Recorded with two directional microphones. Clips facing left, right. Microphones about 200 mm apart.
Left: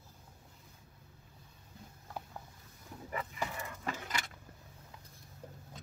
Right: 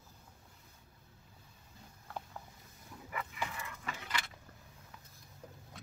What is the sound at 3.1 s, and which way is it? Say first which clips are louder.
Vehicle: left 2 dB; 40° left (ahead or behind).